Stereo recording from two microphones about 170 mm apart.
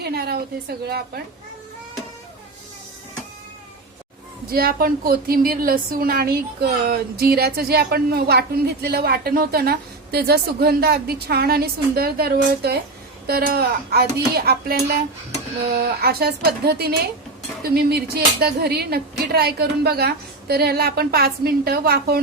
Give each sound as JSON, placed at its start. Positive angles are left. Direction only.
{"t": 0.0, "sound": "speech", "side_deg": -70}
{"t": 4.5, "sound": "speech", "side_deg": -60}
{"t": 16.0, "sound": "speech", "side_deg": -65}